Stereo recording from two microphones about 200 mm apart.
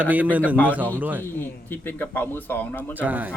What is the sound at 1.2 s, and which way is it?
Speech, 10° left (ahead or behind).